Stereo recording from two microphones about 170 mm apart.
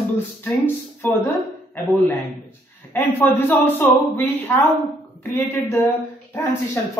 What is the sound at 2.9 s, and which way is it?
Speech, 10° left (ahead or behind).